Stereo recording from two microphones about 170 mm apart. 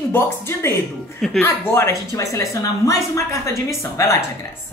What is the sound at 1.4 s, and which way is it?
A woman's voice, 15° left (ahead or behind).